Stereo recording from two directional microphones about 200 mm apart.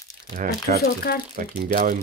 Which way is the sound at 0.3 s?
45° right (ahead or behind).